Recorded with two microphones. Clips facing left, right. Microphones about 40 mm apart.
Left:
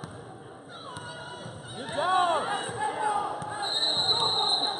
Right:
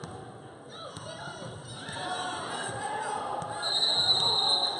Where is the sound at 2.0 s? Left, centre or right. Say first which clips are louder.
Left 10 dB; left.